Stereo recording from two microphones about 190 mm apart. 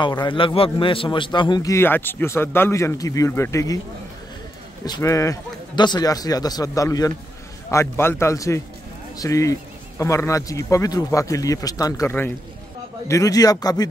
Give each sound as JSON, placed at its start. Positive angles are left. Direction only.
{"t": 0.2, "sound": "a man's voice", "side_deg": 25}
{"t": 4.8, "sound": "a man's voice", "side_deg": 20}